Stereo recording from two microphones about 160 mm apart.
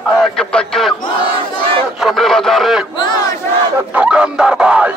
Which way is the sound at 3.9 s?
5° right (ahead or behind).